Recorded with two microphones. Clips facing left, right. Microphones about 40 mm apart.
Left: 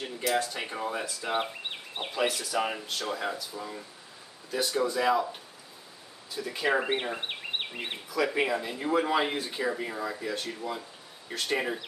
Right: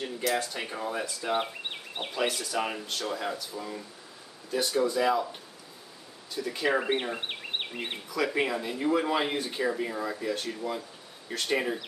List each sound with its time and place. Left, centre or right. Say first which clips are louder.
0.0 s speech: even; centre
6.3 s speech: even; centre